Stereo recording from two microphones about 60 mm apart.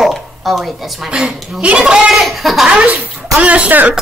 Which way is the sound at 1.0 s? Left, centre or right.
Centre.